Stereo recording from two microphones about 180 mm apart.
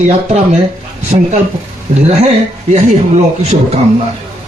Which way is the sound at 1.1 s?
35° right (ahead or behind).